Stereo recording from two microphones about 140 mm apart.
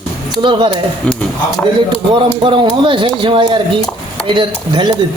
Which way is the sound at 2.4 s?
35° right (ahead or behind).